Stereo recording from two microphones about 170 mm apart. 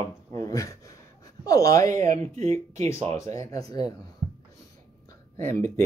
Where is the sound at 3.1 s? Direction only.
20° left (ahead or behind).